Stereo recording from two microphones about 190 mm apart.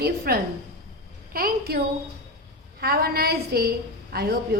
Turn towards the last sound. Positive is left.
turn(degrees=-55)  # may be behind; listen again after turning